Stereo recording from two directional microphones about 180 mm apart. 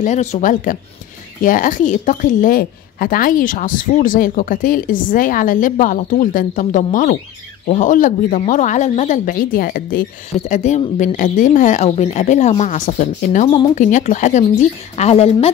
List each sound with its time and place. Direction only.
0.0 s a woman's voice: 40° left (ahead or behind)